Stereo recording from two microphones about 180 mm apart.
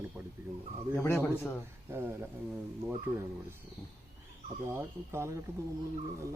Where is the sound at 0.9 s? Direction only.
15° left (ahead or behind).